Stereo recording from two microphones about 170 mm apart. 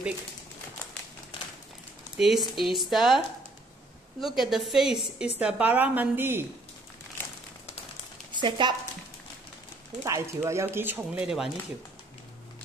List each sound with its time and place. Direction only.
2.1 s speech: centre (ahead or behind)
8.3 s speech: 30° right (ahead or behind)
10.0 s speech: 15° right (ahead or behind)